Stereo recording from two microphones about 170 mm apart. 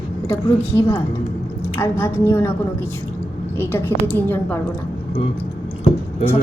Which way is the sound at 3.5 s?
10° left (ahead or behind).